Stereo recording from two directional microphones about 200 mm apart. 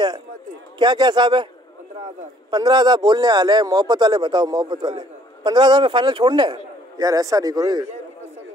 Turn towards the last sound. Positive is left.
turn(degrees=-20)  # may be behind; listen again after turning